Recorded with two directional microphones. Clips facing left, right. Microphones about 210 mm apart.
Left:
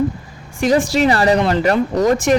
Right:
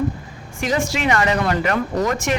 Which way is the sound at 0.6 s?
35° left (ahead or behind).